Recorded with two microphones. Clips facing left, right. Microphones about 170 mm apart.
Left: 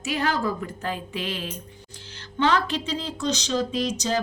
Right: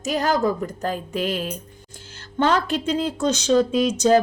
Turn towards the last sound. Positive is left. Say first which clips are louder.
# right 8 dB
turn(degrees=-50)  # may be behind; listen again after turning